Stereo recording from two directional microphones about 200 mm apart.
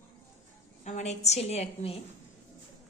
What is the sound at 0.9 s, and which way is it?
Speech, 35° left (ahead or behind).